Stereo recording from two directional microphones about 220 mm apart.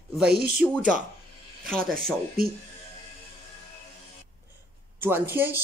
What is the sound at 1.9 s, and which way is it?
Speech, 40° right (ahead or behind).